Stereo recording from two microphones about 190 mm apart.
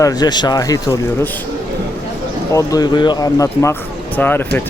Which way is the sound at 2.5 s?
15° left (ahead or behind).